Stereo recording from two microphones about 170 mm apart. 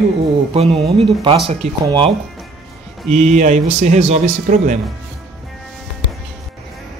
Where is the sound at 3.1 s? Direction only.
40° right (ahead or behind).